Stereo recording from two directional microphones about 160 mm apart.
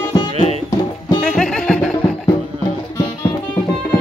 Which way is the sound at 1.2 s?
Centre (ahead or behind).